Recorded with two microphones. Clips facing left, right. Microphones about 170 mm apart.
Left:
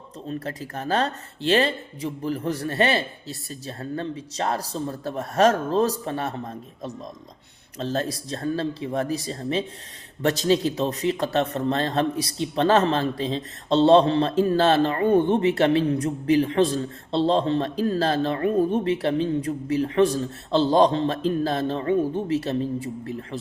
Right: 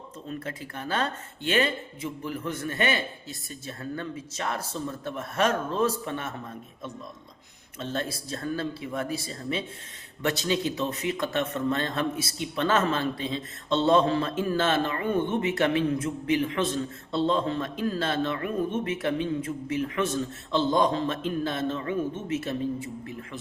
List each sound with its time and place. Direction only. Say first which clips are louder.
0.3 s speech: left 5 dB; 35° left (ahead or behind)